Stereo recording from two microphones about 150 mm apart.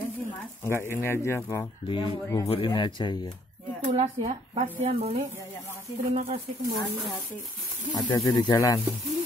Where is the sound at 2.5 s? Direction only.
30° left (ahead or behind).